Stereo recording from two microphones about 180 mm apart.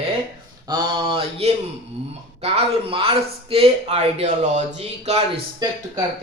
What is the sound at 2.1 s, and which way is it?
Speech, 35° right (ahead or behind).